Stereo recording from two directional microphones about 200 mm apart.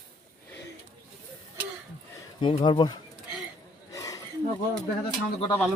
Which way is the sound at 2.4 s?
25° left (ahead or behind).